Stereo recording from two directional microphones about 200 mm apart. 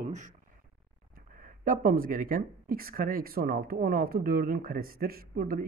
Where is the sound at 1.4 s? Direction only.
40° right (ahead or behind).